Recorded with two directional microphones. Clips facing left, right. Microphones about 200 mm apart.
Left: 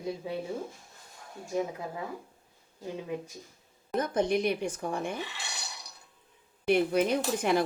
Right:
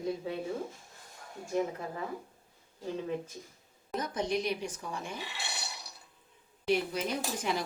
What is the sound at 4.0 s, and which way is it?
Speech, 55° left (ahead or behind).